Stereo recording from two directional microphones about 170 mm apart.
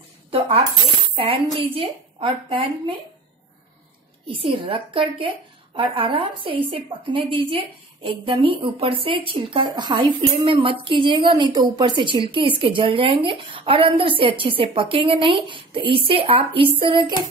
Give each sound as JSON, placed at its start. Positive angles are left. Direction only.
{"t": 0.3, "sound": "coin", "side_deg": -35}
{"t": 1.1, "sound": "a woman's voice", "side_deg": -35}
{"t": 4.3, "sound": "a woman's voice", "side_deg": -30}
{"t": 16.9, "sound": "music", "side_deg": -25}